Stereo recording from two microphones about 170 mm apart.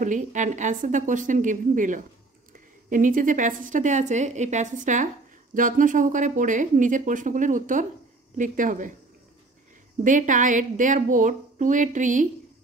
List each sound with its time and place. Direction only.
0.0 s speech: 45° right (ahead or behind)
10.0 s speech: 50° right (ahead or behind)